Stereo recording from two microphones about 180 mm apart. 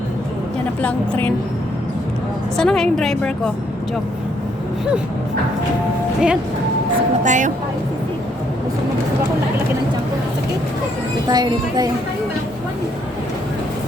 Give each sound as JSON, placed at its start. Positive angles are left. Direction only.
{"t": 0.8, "sound": "a woman's voice", "side_deg": 10}
{"t": 2.6, "sound": "a woman's voice", "side_deg": 5}
{"t": 6.1, "sound": "a woman's voice", "side_deg": -5}
{"t": 7.3, "sound": "speech", "side_deg": -45}
{"t": 11.3, "sound": "speech", "side_deg": -25}